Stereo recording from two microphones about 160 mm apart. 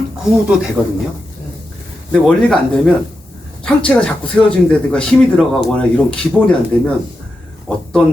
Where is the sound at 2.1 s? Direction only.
5° left (ahead or behind).